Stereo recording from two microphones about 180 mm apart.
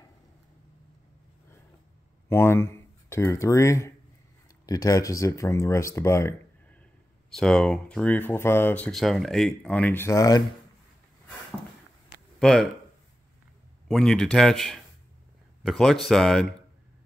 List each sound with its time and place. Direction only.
2.2 s speech: 15° left (ahead or behind)
7.3 s speech: 5° left (ahead or behind)
12.4 s speech: centre (ahead or behind)
13.8 s speech: 5° left (ahead or behind)